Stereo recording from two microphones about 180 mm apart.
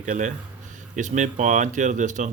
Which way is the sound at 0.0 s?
45° right (ahead or behind).